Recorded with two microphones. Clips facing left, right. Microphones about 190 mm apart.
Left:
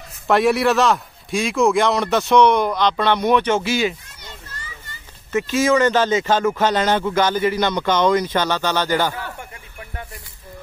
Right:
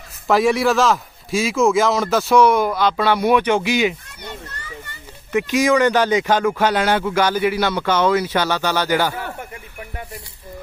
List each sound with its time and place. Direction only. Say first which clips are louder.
0.3 s a man's voice: even; centre (ahead or behind); by 3.9 s 15° right (ahead or behind)
4.2 s children playing: right 7 dB; 60° right (ahead or behind)
5.5 s a man's voice: even; 15° right (ahead or behind)